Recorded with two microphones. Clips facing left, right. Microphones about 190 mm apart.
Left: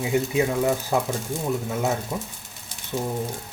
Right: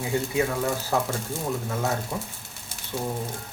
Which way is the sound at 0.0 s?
20° left (ahead or behind).